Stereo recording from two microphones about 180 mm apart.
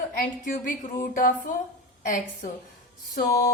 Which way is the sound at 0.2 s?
50° left (ahead or behind).